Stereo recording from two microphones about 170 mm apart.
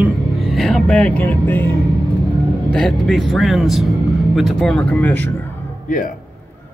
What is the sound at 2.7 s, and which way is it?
Speech, 5° left (ahead or behind).